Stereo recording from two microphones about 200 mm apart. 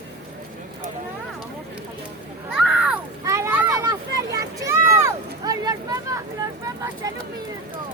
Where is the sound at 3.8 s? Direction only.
15° right (ahead or behind).